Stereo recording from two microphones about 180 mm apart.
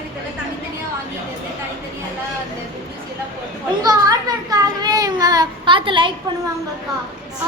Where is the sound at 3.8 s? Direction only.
20° right (ahead or behind).